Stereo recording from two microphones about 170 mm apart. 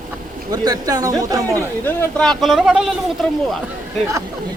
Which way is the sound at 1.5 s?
10° left (ahead or behind).